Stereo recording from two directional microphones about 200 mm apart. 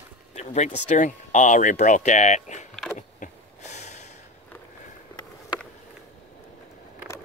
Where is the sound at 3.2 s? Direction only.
35° left (ahead or behind).